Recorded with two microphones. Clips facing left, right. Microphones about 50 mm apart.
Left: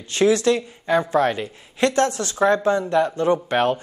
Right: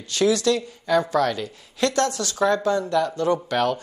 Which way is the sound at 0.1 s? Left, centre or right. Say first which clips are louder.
Left 3 dB; left.